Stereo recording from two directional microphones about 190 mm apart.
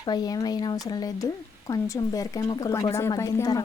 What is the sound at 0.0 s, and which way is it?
Speech, 20° left (ahead or behind).